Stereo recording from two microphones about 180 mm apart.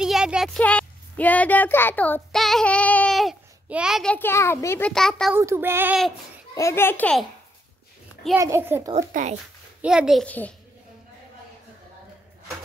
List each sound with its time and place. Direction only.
0.0 s a sound: 5° right (ahead or behind)
0.6 s a child's voice: 5° left (ahead or behind)
5.3 s child singing: 15° right (ahead or behind)
6.5 s a child's voice: 15° left (ahead or behind)
8.4 s child singing: 15° right (ahead or behind)
8.9 s a child's voice: 40° right (ahead or behind)
9.8 s a child's voice: 5° right (ahead or behind)